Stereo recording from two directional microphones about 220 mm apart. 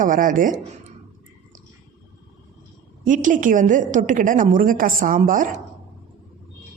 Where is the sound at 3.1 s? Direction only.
35° right (ahead or behind).